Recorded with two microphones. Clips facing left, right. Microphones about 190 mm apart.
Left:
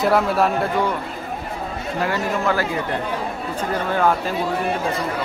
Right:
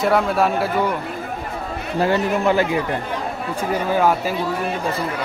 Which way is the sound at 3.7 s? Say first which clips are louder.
Right 2 dB; 10° right (ahead or behind).